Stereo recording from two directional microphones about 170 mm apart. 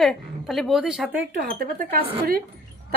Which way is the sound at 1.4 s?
60° right (ahead or behind).